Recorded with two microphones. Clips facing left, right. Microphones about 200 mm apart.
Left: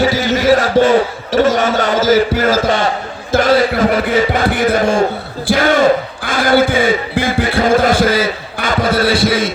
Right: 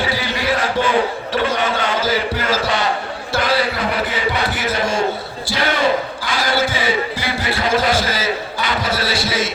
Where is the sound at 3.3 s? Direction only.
45° left (ahead or behind).